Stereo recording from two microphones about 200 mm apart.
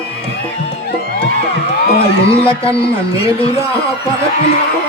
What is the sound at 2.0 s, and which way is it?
Speech, 30° left (ahead or behind).